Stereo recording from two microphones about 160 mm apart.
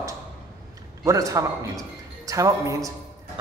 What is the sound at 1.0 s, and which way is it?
A man's voice, 20° right (ahead or behind).